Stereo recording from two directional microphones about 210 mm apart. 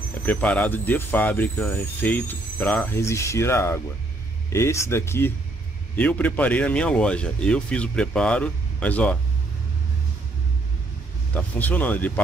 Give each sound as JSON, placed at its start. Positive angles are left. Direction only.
{"t": 0.2, "sound": "speech", "side_deg": 5}
{"t": 11.3, "sound": "speech", "side_deg": 10}